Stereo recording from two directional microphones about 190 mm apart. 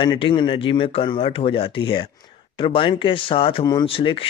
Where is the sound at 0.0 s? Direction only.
25° left (ahead or behind).